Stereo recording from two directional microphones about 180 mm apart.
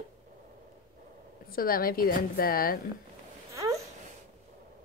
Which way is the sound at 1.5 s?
55° left (ahead or behind).